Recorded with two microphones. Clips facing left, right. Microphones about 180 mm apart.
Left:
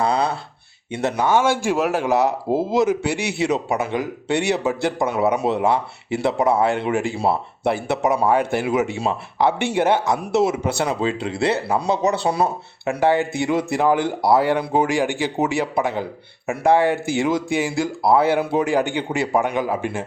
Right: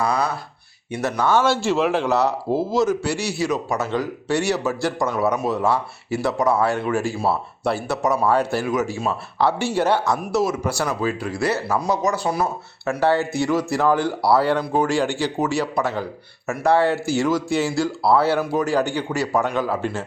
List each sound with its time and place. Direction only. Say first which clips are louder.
0.0 s a sound: left 2 dB; 25° left (ahead or behind)
0.9 s speech: left 2 dB; 25° left (ahead or behind)
1.1 s speech: even; 15° left (ahead or behind); by 12.5 s 30° left (ahead or behind)
12.8 s speech: left 1 dB; 15° left (ahead or behind)